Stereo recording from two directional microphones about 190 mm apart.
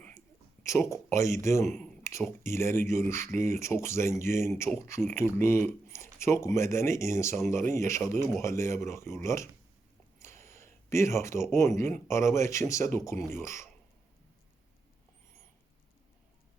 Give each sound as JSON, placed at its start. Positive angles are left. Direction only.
{"t": 0.6, "sound": "speech", "side_deg": 15}
{"t": 10.2, "sound": "a sound", "side_deg": 15}
{"t": 11.5, "sound": "speech", "side_deg": 15}